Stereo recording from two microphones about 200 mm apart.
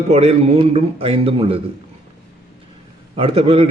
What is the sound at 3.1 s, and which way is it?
Speech, 30° right (ahead or behind).